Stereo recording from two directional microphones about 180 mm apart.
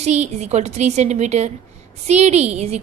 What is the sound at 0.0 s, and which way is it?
A woman's voice, 40° right (ahead or behind).